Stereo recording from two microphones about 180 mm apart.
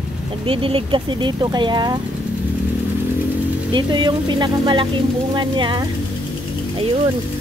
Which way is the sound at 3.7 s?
25° right (ahead or behind).